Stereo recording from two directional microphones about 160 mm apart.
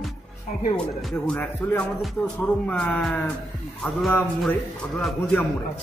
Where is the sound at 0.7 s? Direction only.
5° left (ahead or behind).